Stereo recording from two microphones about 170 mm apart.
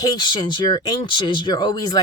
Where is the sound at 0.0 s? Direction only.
25° left (ahead or behind).